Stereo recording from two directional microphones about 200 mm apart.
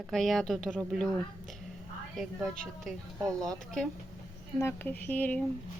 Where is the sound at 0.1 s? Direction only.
Centre (ahead or behind).